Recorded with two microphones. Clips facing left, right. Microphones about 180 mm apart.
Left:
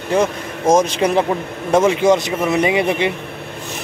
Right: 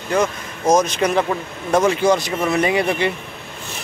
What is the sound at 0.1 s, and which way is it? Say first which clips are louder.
A man's voice: left 2 dB; 25° left (ahead or behind).